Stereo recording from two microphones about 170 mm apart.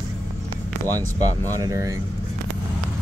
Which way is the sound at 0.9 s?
20° right (ahead or behind).